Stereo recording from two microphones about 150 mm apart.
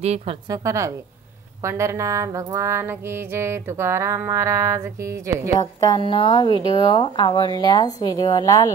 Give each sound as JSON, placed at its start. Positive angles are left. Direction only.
{"t": 0.0, "sound": "a woman's voice", "side_deg": -45}
{"t": 0.5, "sound": "mantra", "side_deg": -20}
{"t": 5.6, "sound": "speech", "side_deg": 25}